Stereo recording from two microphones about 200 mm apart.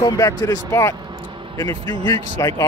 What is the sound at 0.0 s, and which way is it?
Speech, 20° left (ahead or behind).